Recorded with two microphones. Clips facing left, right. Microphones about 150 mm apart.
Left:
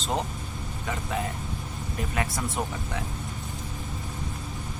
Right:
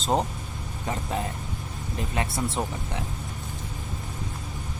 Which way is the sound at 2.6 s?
25° right (ahead or behind).